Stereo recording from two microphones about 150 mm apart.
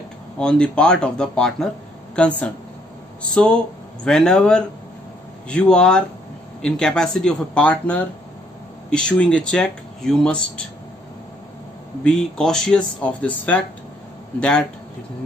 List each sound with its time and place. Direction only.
0.4 s speech: 5° left (ahead or behind)
12.0 s speech: 5° left (ahead or behind)